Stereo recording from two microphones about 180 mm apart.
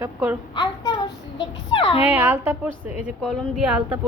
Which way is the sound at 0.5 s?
25° left (ahead or behind).